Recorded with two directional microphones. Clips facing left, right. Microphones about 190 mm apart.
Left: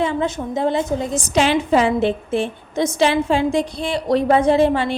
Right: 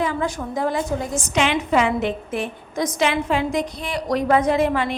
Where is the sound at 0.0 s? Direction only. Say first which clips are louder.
Left 3 dB; 25° left (ahead or behind).